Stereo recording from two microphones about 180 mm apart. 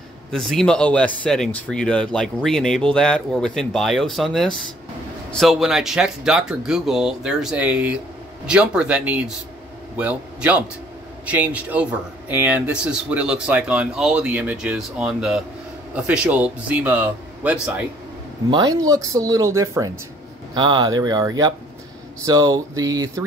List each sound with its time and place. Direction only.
0.3 s a man's voice: centre (ahead or behind)
18.5 s speech: 20° right (ahead or behind)